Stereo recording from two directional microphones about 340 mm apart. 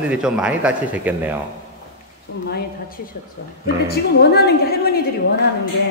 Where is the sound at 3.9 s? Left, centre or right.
Left.